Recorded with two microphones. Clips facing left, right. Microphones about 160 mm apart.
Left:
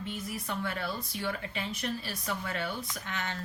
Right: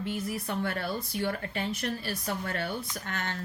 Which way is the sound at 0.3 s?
50° right (ahead or behind).